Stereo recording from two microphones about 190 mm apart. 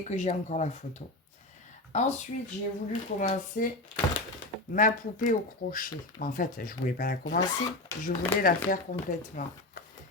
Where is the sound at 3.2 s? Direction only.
45° left (ahead or behind).